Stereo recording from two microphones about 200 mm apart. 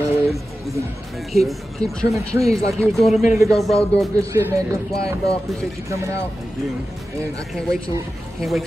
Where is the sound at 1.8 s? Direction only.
5° left (ahead or behind).